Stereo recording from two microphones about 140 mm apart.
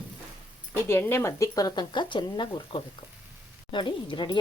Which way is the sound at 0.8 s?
20° left (ahead or behind).